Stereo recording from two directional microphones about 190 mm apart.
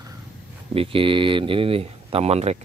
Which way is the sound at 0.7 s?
30° right (ahead or behind).